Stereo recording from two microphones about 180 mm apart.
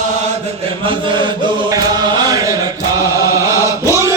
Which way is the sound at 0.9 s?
25° right (ahead or behind).